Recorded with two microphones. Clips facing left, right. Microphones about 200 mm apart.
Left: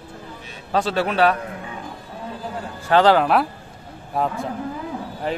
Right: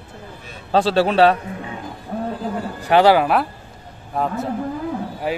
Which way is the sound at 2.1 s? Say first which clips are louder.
Right 12 dB; 60° right (ahead or behind).